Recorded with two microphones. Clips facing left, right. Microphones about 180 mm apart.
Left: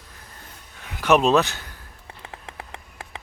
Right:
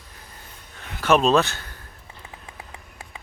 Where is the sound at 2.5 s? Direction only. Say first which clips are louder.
Left 3 dB; 65° left (ahead or behind).